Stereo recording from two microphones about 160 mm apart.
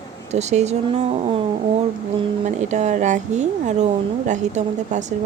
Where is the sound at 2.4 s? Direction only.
50° right (ahead or behind).